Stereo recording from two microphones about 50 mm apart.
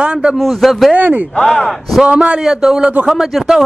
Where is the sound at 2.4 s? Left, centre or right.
Centre.